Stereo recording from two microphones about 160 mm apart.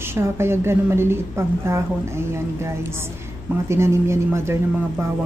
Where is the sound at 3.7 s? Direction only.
15° right (ahead or behind).